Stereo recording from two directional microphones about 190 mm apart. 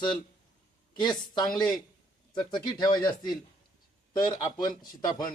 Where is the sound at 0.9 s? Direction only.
20° left (ahead or behind).